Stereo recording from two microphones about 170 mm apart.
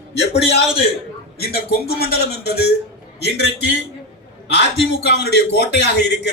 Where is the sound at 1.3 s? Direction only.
65° left (ahead or behind).